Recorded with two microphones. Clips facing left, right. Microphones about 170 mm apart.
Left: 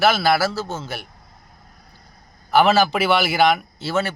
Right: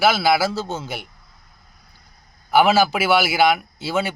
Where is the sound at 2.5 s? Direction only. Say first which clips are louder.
Even; 10° right (ahead or behind).